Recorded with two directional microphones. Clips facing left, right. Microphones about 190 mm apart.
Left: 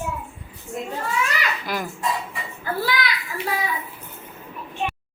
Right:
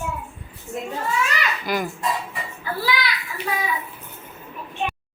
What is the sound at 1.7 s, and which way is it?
Speech, centre (ahead or behind).